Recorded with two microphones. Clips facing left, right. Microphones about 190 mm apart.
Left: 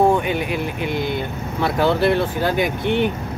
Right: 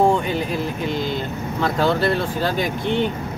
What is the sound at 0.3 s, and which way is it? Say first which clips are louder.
Speech: left 1 dB; 65° left (ahead or behind).